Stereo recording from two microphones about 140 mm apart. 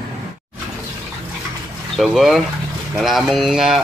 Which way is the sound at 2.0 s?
Centre (ahead or behind).